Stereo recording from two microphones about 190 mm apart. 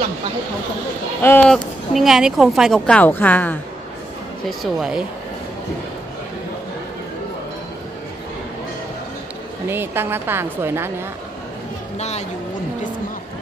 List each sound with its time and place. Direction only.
1.2 s speech: 10° left (ahead or behind)
4.5 s speech: centre (ahead or behind)
9.7 s a woman's voice: 10° right (ahead or behind)
12.0 s speech: 35° left (ahead or behind)